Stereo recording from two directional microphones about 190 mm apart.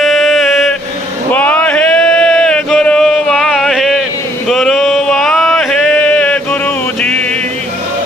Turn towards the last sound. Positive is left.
turn(degrees=5)  # may be behind; listen again after turning